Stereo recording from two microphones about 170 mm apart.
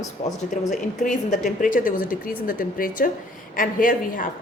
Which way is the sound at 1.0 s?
45° left (ahead or behind).